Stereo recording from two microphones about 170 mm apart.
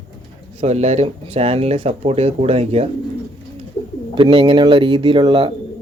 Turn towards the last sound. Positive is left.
turn(degrees=-30)  # may be behind; listen again after turning